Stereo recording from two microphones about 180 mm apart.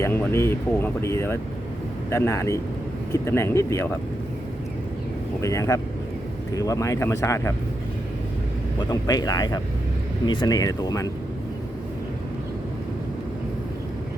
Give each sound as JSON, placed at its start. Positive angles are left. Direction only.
{"t": 0.0, "sound": "speech", "side_deg": 10}
{"t": 5.4, "sound": "speech", "side_deg": 15}
{"t": 8.9, "sound": "speech", "side_deg": 20}